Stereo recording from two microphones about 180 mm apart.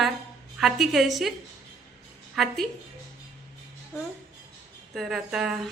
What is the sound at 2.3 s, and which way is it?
Speech, centre (ahead or behind).